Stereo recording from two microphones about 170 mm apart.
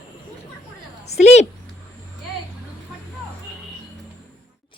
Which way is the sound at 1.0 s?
40° left (ahead or behind).